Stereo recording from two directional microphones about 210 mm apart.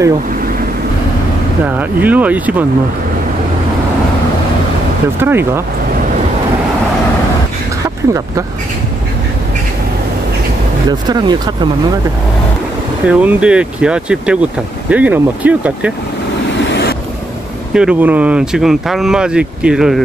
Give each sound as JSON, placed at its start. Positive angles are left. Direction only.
{"t": 1.8, "sound": "speech", "side_deg": -10}
{"t": 5.2, "sound": "speech", "side_deg": -10}
{"t": 10.9, "sound": "speech", "side_deg": -20}
{"t": 13.0, "sound": "speech", "side_deg": -5}
{"t": 17.7, "sound": "speech", "side_deg": -5}